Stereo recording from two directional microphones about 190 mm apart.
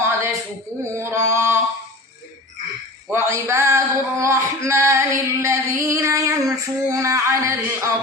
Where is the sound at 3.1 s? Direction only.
15° right (ahead or behind).